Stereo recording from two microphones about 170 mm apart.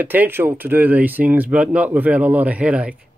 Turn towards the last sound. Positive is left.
turn(degrees=-5)  # may be behind; listen again after turning